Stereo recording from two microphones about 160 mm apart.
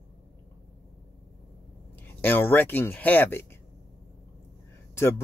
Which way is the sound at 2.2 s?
10° left (ahead or behind).